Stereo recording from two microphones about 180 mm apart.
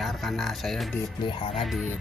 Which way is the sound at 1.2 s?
25° left (ahead or behind).